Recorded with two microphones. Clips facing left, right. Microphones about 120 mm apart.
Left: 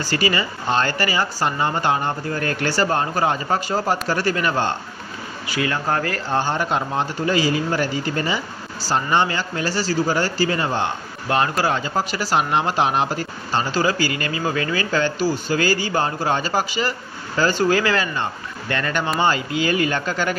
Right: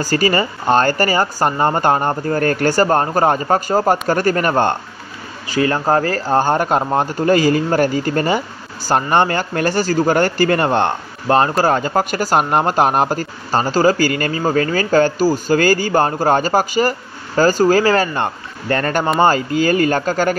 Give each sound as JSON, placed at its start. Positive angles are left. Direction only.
{"t": 0.0, "sound": "speech", "side_deg": -45}
{"t": 5.5, "sound": "speech", "side_deg": -35}
{"t": 11.2, "sound": "speech", "side_deg": -40}